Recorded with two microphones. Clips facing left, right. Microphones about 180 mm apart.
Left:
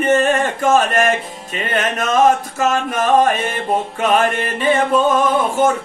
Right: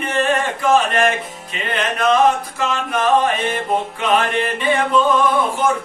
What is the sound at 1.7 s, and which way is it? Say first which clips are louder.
Music: even; 45° left (ahead or behind).